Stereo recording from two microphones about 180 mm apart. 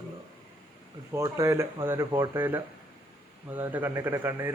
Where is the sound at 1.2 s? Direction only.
15° right (ahead or behind).